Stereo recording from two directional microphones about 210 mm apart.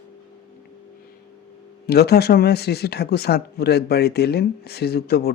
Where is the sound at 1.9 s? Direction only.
50° left (ahead or behind).